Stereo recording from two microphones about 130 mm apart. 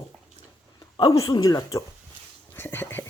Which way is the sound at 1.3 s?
30° left (ahead or behind).